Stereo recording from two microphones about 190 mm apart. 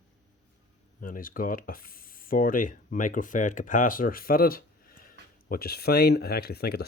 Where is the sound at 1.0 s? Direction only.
45° left (ahead or behind).